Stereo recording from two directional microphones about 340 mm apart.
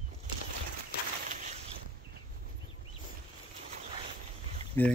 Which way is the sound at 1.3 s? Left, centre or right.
Right.